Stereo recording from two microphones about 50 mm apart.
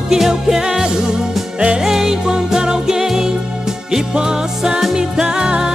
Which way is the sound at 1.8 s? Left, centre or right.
Centre.